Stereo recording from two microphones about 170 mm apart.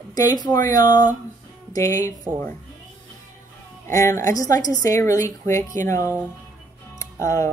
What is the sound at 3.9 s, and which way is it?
Speech, 15° left (ahead or behind).